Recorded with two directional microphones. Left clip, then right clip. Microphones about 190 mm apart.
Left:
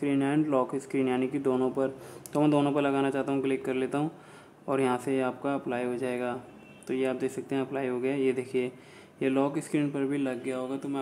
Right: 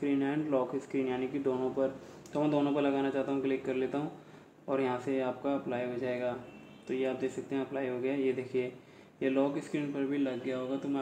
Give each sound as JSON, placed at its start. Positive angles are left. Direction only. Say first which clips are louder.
{"t": 0.0, "sound": "speech", "louder": "left 5 dB", "side_deg": 25}